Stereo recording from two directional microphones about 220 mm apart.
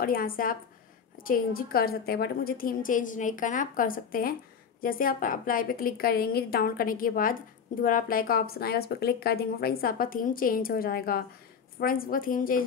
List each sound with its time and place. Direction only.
0.0 s a woman's voice: 40° left (ahead or behind)